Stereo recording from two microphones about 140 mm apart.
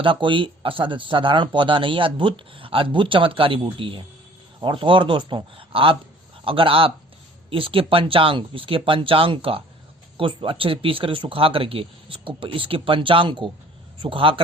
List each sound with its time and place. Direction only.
0.0 s speech: 35° right (ahead or behind)